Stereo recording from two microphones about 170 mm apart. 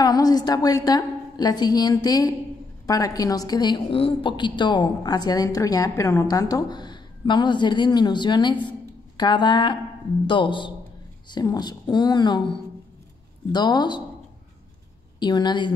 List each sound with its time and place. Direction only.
0.0 s a woman's voice: 20° left (ahead or behind)
15.1 s a woman's voice: 25° left (ahead or behind)